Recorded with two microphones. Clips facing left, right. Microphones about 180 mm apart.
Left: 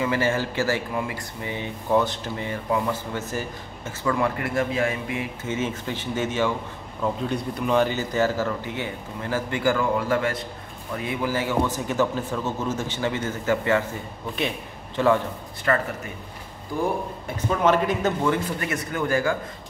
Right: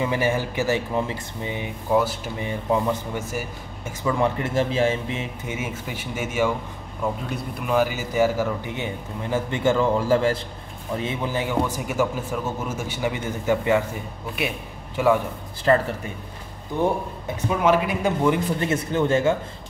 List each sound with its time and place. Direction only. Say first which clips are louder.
0.0 s a man's voice: even; 15° right (ahead or behind)
1.9 s a man's voice: even; 5° right (ahead or behind)
15.0 s a man's voice: right 1 dB; 10° right (ahead or behind)
15.7 s speech: right 4 dB; 30° right (ahead or behind)
17.5 s a man's voice: even; 10° right (ahead or behind)
18.6 s speech: right 5 dB; 25° right (ahead or behind)